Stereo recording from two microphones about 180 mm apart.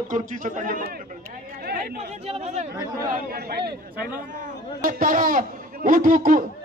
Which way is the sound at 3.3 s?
60° right (ahead or behind).